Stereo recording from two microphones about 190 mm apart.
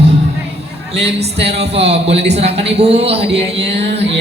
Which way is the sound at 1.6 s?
65° right (ahead or behind).